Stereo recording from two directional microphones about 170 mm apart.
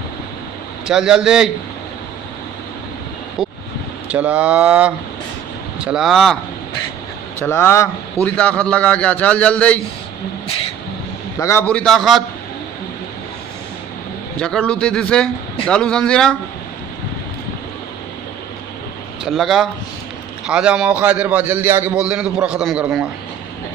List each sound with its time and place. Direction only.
0.8 s speech: 5° right (ahead or behind)
4.1 s a man's voice: 5° right (ahead or behind)
7.3 s a man's voice: 15° left (ahead or behind)
11.3 s a man's voice: 15° left (ahead or behind); by 12.2 s centre (ahead or behind)
14.4 s speech: 5° left (ahead or behind)
19.2 s a man's voice: centre (ahead or behind)